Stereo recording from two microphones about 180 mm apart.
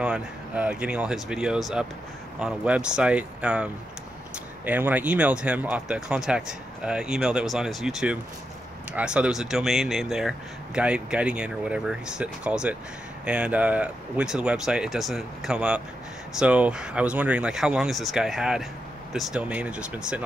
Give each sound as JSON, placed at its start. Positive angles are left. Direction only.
{"t": 0.0, "sound": "speech", "side_deg": -5}